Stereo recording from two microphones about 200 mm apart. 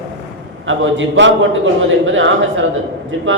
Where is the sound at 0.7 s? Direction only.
70° right (ahead or behind).